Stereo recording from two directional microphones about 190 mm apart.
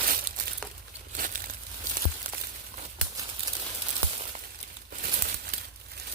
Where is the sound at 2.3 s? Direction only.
45° right (ahead or behind).